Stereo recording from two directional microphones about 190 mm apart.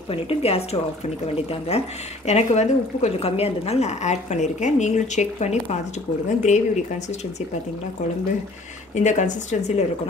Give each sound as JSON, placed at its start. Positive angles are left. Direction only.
{"t": 0.1, "sound": "a woman's voice", "side_deg": 30}
{"t": 8.9, "sound": "a woman's voice", "side_deg": 40}